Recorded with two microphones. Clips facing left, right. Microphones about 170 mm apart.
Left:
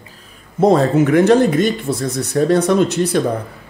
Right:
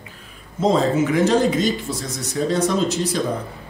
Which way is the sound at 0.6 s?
60° left (ahead or behind).